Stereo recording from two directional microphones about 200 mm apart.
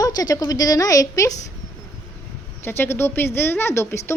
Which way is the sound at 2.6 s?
10° left (ahead or behind).